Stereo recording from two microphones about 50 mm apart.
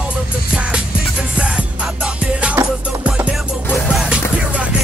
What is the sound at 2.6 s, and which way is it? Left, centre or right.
Music, right.